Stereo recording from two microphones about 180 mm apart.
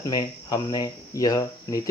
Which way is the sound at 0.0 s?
20° left (ahead or behind).